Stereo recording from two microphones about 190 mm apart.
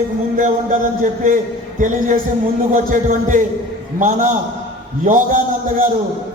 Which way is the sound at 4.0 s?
40° right (ahead or behind).